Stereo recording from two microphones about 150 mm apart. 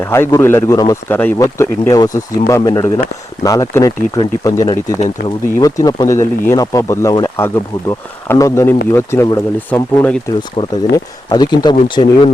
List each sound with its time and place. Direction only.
0.1 s speech: 20° left (ahead or behind)
10.9 s speech: 30° left (ahead or behind)